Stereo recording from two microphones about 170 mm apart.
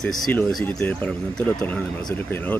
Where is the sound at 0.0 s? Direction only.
5° left (ahead or behind).